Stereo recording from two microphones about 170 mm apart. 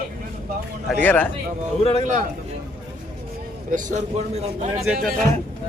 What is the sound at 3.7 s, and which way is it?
A man's voice, 50° right (ahead or behind).